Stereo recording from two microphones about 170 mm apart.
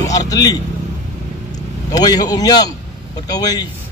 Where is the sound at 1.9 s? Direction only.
20° left (ahead or behind).